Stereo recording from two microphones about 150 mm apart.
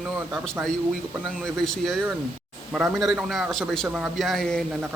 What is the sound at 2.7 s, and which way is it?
Speech, 5° right (ahead or behind).